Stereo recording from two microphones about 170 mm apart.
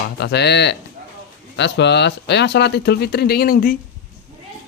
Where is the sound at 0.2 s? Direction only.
80° left; by 3.7 s 60° left (ahead or behind).